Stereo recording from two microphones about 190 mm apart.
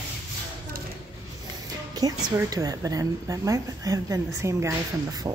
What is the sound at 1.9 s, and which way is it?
Speech, 20° right (ahead or behind).